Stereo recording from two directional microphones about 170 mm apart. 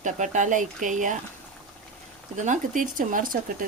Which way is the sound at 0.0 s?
45° right (ahead or behind).